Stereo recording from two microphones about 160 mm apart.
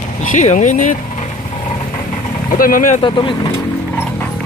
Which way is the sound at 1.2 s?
35° left (ahead or behind).